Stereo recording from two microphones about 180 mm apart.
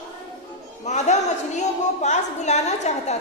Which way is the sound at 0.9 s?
40° left (ahead or behind).